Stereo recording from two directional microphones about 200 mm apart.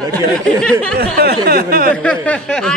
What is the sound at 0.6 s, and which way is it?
Speech, 5° left (ahead or behind).